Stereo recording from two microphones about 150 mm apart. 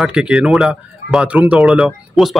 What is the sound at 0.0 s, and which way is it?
Speech, 5° right (ahead or behind).